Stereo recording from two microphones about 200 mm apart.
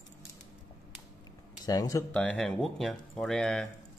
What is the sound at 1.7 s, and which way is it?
Speech, 15° left (ahead or behind).